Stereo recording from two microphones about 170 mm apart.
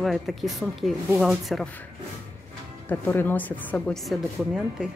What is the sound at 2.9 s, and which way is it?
A woman's voice, 10° left (ahead or behind).